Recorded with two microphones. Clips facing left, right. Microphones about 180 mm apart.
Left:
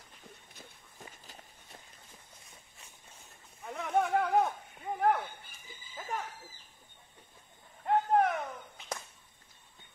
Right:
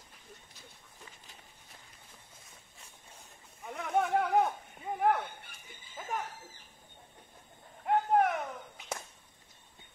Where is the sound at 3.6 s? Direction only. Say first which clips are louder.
Left 1 dB; centre (ahead or behind).